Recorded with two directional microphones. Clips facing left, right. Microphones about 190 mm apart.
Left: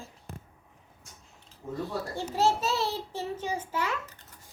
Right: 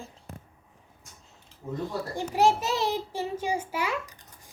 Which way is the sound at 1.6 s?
15° right (ahead or behind).